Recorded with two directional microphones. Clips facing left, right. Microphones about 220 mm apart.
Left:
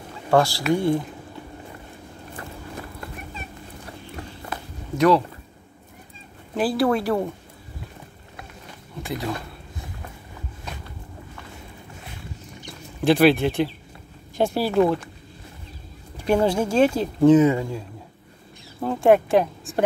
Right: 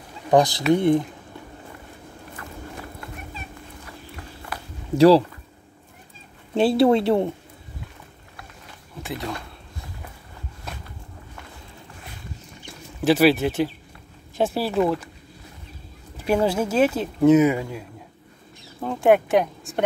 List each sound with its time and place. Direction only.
0.3 s speech: 20° right (ahead or behind)
4.9 s speech: 30° right (ahead or behind)
6.5 s speech: 25° right (ahead or behind)
9.0 s speech: centre (ahead or behind)
13.0 s speech: 5° right (ahead or behind)
16.2 s speech: 5° right (ahead or behind)
17.6 s a man's voice: 25° left (ahead or behind)
18.8 s speech: centre (ahead or behind)